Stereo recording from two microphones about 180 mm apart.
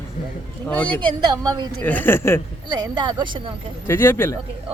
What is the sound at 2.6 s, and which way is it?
Speech, 25° right (ahead or behind).